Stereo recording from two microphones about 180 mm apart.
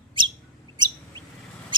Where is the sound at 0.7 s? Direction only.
25° right (ahead or behind).